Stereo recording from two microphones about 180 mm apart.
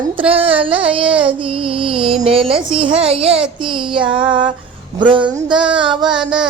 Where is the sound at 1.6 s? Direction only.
30° right (ahead or behind).